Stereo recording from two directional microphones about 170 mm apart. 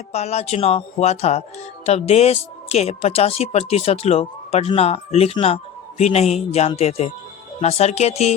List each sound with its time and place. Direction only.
0.1 s speech: 40° left (ahead or behind)